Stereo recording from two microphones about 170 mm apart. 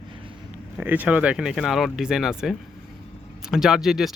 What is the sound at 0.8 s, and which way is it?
Speech, 10° right (ahead or behind).